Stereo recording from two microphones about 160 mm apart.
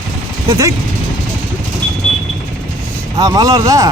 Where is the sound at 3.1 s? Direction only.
25° right (ahead or behind).